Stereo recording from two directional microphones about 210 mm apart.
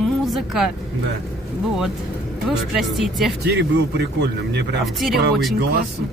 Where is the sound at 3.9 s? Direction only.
55° right (ahead or behind).